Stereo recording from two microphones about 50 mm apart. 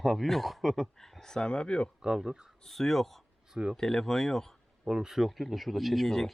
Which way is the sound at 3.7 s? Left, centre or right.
Centre.